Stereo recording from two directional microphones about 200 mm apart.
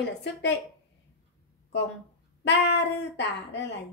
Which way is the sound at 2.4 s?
60° left (ahead or behind).